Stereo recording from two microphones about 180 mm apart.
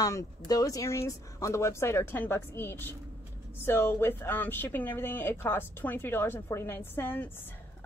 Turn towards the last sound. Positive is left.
turn(degrees=10)  # may be behind; listen again after turning